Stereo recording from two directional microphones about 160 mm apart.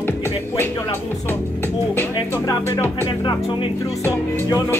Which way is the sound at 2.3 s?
15° left (ahead or behind).